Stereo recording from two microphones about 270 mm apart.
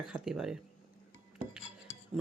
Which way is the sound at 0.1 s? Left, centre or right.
Centre.